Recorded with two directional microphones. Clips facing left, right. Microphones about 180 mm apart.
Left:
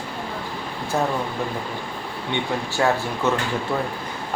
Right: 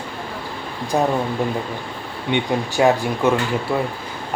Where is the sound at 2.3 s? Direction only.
15° right (ahead or behind).